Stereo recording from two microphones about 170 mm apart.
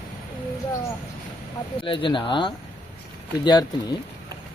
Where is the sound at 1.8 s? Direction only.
30° left (ahead or behind).